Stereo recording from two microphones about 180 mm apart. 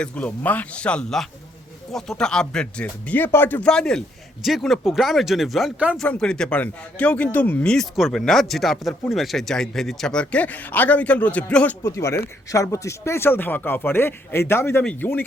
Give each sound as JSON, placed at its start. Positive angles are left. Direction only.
{"t": 0.0, "sound": "a man's voice", "side_deg": 10}